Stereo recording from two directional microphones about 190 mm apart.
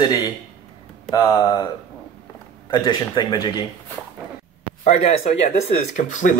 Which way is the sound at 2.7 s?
25° left (ahead or behind).